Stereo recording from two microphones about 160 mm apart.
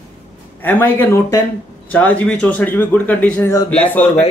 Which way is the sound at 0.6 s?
10° left (ahead or behind).